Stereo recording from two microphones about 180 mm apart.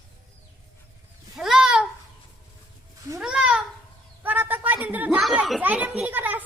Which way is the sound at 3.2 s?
5° right (ahead or behind).